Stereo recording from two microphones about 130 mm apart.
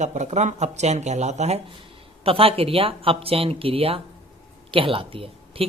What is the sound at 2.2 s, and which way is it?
Speech, 45° right (ahead or behind).